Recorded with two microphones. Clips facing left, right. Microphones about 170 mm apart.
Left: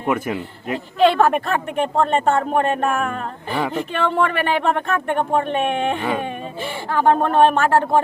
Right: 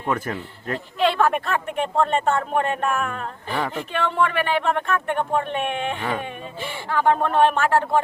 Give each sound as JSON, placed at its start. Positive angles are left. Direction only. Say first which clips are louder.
{"t": 0.0, "sound": "speech", "louder": "left 4 dB", "side_deg": 10}
{"t": 1.1, "sound": "speech", "louder": "left 4 dB", "side_deg": 40}
{"t": 6.0, "sound": "speech", "louder": "left 4 dB", "side_deg": 10}
{"t": 6.9, "sound": "speech", "louder": "left 3 dB", "side_deg": 40}